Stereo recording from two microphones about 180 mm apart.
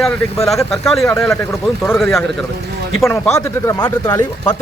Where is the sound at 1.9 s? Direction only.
15° left (ahead or behind).